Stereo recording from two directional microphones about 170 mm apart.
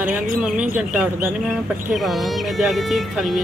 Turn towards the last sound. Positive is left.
turn(degrees=0)  # may be behind; listen again after turning